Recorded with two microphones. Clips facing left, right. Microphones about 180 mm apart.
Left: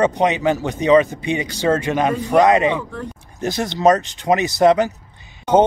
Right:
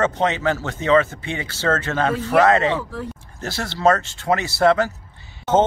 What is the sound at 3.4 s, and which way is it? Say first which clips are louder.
Speech: left 3 dB; 15° left (ahead or behind).